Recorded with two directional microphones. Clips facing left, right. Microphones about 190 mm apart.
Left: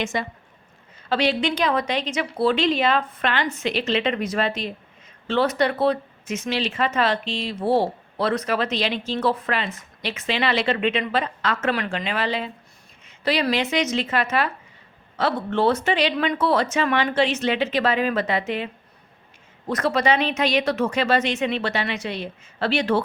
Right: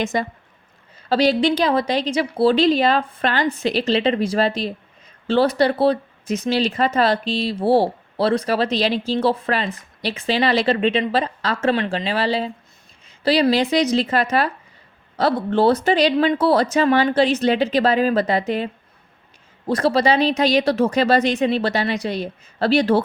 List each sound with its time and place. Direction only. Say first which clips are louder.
0.0 s speech: right 4 dB; 40° right (ahead or behind)